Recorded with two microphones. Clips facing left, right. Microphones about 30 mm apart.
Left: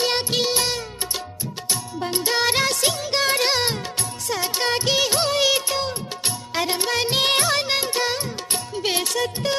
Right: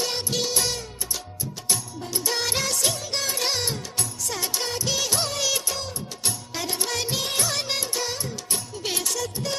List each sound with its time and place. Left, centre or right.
0.0 s music of bollywood: left
2.0 s music: left
4.6 s music of bollywood: left
4.9 s music of bollywood: left
7.2 s music of bollywood: left
7.5 s music: left